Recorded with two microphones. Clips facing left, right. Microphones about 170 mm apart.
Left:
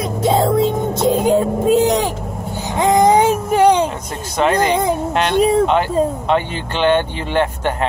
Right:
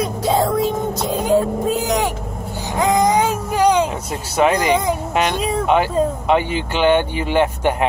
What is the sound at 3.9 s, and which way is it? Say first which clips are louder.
Speech: right 1 dB; 10° right (ahead or behind).